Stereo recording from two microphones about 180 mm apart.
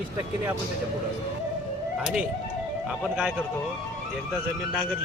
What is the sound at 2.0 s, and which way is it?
Speech, 5° right (ahead or behind).